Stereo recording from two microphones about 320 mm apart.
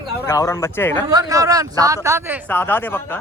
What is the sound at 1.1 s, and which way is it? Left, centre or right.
Speech, centre.